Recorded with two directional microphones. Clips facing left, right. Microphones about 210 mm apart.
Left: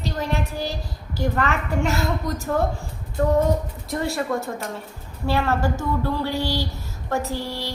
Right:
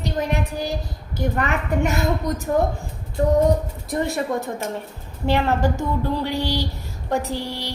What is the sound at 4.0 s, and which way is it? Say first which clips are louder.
A child's voice: right 1 dB; 20° right (ahead or behind).